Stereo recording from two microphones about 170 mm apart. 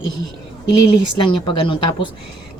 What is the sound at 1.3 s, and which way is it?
Speech, 30° left (ahead or behind).